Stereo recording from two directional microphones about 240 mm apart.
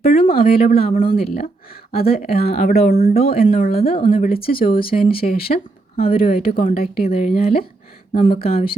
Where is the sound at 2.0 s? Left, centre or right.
Left.